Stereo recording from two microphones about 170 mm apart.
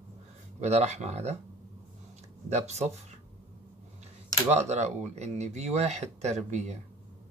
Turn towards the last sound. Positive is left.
turn(degrees=-40)  # may be behind; listen again after turning